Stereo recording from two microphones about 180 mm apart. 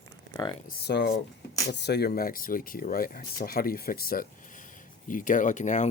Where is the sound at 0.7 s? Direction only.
65° left (ahead or behind).